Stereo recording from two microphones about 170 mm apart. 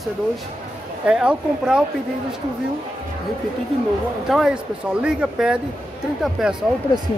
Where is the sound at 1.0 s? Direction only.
5° right (ahead or behind).